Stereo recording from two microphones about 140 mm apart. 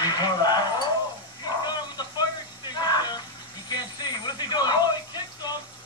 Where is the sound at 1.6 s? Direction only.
30° left (ahead or behind).